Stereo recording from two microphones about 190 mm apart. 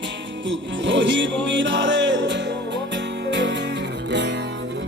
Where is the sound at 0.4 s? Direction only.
70° right (ahead or behind).